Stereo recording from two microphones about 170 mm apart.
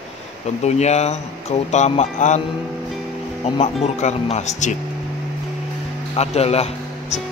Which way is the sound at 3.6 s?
40° left (ahead or behind).